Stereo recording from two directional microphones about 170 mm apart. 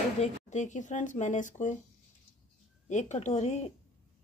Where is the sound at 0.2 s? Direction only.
45° left (ahead or behind).